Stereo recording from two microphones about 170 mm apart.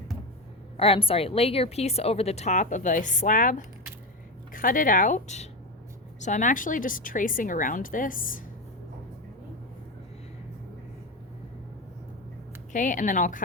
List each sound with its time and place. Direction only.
0.8 s a woman's voice: 35° left (ahead or behind); by 8.4 s 50° left (ahead or behind)
12.7 s speech: 50° left (ahead or behind)